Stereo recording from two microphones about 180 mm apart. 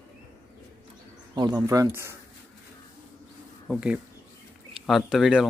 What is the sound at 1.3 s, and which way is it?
Speech, 20° right (ahead or behind).